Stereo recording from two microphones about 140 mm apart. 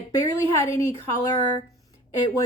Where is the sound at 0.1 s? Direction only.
20° left (ahead or behind).